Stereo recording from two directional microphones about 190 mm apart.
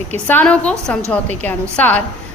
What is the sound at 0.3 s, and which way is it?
A woman's voice, 5° left (ahead or behind).